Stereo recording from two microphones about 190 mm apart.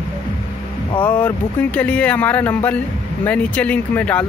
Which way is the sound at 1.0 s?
10° left (ahead or behind).